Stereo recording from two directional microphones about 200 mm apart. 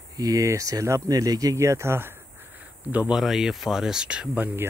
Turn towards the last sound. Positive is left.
turn(degrees=-10)  # may be behind; listen again after turning